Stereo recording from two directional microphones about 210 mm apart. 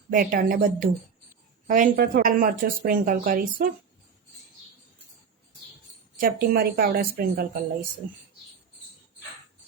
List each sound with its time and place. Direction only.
0.1 s a woman's voice: 40° right (ahead or behind)
6.1 s a woman's voice: 45° right (ahead or behind)